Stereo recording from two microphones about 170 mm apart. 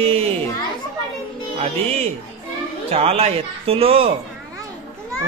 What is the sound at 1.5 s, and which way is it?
Speech, 40° right (ahead or behind).